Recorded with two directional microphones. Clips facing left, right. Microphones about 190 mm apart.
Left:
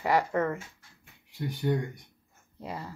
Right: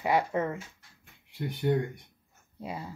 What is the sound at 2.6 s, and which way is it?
Speech, 15° right (ahead or behind).